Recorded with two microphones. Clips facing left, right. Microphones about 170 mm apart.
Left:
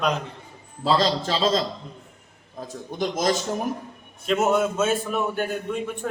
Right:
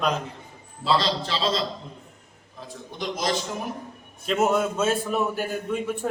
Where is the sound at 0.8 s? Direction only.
45° left (ahead or behind).